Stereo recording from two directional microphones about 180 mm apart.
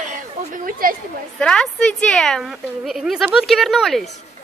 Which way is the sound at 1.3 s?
5° left (ahead or behind).